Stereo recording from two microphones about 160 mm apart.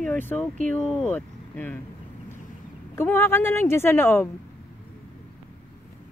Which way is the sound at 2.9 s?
15° left (ahead or behind).